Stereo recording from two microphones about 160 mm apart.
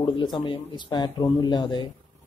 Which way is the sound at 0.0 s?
30° left (ahead or behind).